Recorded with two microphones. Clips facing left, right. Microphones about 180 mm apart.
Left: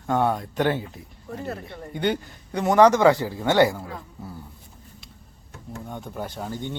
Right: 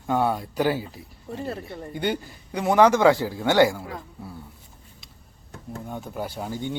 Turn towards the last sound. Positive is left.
turn(degrees=-10)  # may be behind; listen again after turning